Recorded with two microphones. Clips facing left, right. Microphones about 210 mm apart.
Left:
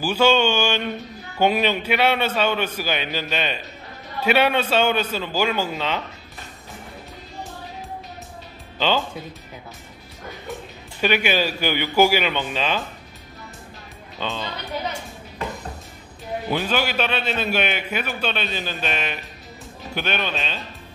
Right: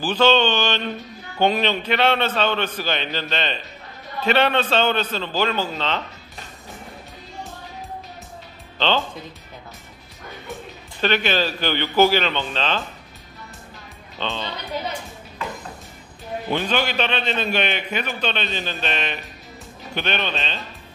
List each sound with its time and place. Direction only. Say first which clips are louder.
0.0 s a man's voice: even; 10° left (ahead or behind)
8.7 s speech: even; 10° left (ahead or behind)
11.0 s a man's voice: even; 10° left (ahead or behind)
14.2 s a man's voice: even; 10° left (ahead or behind)
16.4 s a man's voice: right 1 dB; 5° left (ahead or behind)